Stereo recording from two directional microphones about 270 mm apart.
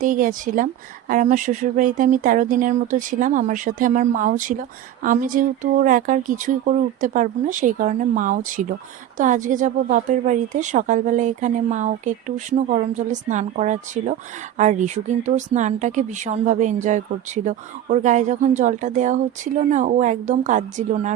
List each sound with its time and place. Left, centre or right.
0.0 s speech: right